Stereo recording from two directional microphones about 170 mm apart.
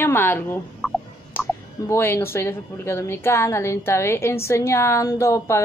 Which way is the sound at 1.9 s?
15° left (ahead or behind).